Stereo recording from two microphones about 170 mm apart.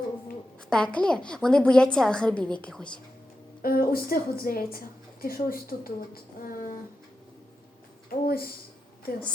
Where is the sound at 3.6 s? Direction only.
60° left (ahead or behind).